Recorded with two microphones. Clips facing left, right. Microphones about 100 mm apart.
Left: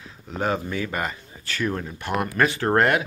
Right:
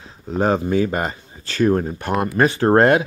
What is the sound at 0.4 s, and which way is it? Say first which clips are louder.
Speech: right 8 dB; 30° right (ahead or behind).